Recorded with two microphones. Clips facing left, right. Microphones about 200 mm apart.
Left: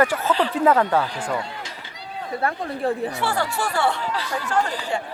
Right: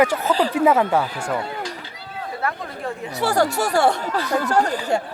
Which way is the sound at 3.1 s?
40° right (ahead or behind).